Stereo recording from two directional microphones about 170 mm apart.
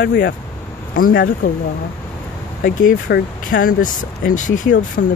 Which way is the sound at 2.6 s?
55° left (ahead or behind).